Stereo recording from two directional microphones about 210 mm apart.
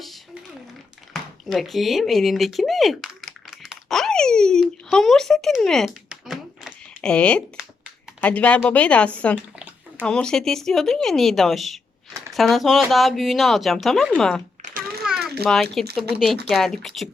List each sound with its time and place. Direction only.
1.1 s a sound: centre (ahead or behind)
8.2 s speech: 5° left (ahead or behind)
15.1 s mechanisms: 5° right (ahead or behind)
15.4 s speech: centre (ahead or behind)